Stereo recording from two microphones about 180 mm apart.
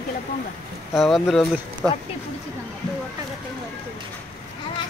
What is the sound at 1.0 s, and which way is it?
Speech, centre (ahead or behind).